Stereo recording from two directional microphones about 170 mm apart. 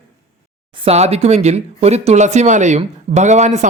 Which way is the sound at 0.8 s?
40° right (ahead or behind).